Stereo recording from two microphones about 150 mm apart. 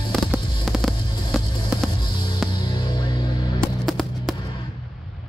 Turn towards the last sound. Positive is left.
turn(degrees=0)  # may be behind; listen again after turning